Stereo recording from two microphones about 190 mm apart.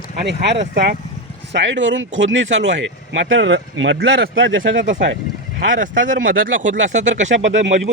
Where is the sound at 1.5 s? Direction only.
75° right (ahead or behind).